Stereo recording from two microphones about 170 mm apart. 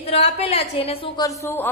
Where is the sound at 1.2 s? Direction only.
15° left (ahead or behind).